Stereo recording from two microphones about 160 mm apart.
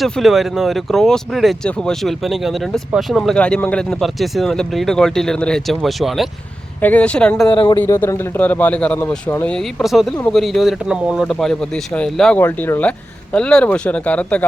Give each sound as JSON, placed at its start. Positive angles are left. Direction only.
{"t": 0.0, "sound": "a man's voice", "side_deg": 0}
{"t": 7.4, "sound": "speech", "side_deg": 30}
{"t": 7.8, "sound": "a man's voice", "side_deg": 15}
{"t": 12.4, "sound": "a man's voice", "side_deg": 15}